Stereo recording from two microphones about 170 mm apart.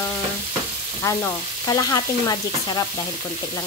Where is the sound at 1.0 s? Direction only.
20° left (ahead or behind).